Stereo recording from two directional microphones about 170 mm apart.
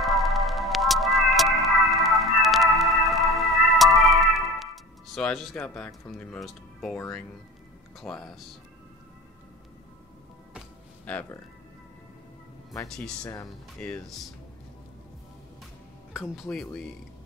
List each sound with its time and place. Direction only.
0.0 s music: centre (ahead or behind)
7.0 s speech: 5° left (ahead or behind)
13.2 s speech: 20° left (ahead or behind)
13.5 s speech: 5° left (ahead or behind)
16.1 s speech: 5° right (ahead or behind)